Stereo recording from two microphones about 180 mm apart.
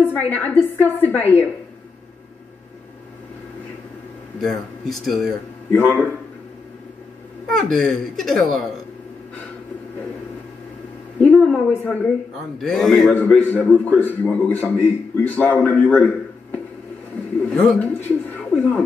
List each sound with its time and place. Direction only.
0.0 s a man's voice: 10° left (ahead or behind)
4.4 s a man's voice: centre (ahead or behind)
7.4 s speech: centre (ahead or behind)
11.1 s a woman's voice: 5° left (ahead or behind)
17.5 s a man's voice: 5° left (ahead or behind)